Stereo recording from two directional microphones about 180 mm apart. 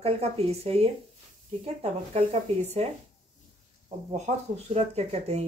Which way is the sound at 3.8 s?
40° right (ahead or behind).